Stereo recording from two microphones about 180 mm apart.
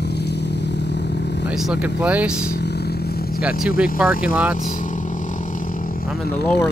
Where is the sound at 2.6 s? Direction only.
65° left (ahead or behind).